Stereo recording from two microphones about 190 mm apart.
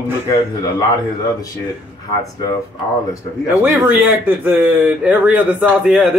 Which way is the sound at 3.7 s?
10° right (ahead or behind).